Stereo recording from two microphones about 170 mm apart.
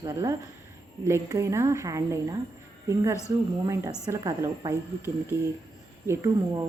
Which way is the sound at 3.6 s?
20° right (ahead or behind).